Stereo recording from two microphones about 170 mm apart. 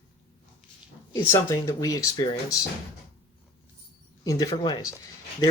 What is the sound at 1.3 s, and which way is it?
Speech, 20° left (ahead or behind).